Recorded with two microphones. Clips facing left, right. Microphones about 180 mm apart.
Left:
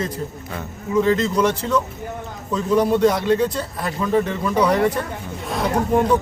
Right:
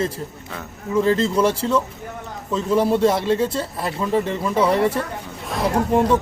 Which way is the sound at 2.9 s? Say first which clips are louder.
Left 1 dB; 30° right (ahead or behind).